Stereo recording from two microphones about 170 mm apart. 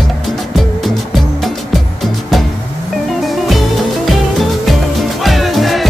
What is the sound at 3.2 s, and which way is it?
Music, centre (ahead or behind).